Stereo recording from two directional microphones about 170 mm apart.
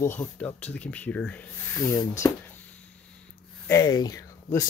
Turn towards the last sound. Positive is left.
turn(degrees=20)  # may be behind; listen again after turning